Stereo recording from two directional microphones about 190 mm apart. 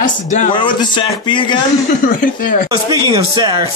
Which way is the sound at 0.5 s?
25° left (ahead or behind).